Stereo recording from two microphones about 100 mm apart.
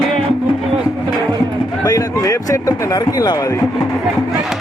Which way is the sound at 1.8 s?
35° left (ahead or behind).